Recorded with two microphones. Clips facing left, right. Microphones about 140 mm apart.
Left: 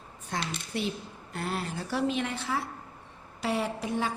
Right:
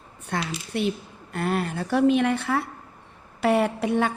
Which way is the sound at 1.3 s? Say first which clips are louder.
Right 8 dB; 60° right (ahead or behind).